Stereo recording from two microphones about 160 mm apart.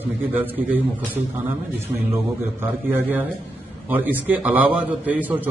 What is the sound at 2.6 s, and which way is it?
A man's voice, 10° right (ahead or behind).